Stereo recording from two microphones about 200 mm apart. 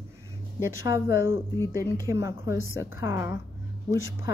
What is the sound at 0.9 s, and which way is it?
A woman's voice, 15° right (ahead or behind).